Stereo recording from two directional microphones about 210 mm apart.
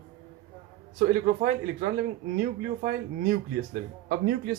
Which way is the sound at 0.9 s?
40° right (ahead or behind).